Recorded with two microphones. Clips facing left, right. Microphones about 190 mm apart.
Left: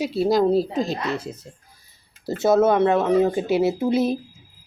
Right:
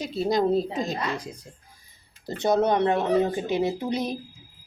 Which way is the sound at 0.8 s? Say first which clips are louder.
Left 3 dB; 15° right (ahead or behind).